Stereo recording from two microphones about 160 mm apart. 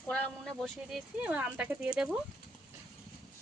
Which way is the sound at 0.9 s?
5° right (ahead or behind).